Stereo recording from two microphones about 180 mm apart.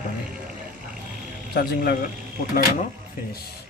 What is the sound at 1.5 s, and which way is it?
Speech, 60° left (ahead or behind).